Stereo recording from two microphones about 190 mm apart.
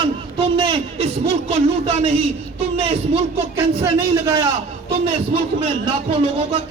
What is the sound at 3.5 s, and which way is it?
Speech, 15° right (ahead or behind).